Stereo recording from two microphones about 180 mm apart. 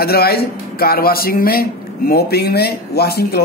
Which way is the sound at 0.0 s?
60° left (ahead or behind).